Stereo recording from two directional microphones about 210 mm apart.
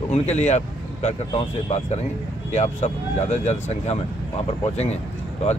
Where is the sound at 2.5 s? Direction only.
35° left (ahead or behind).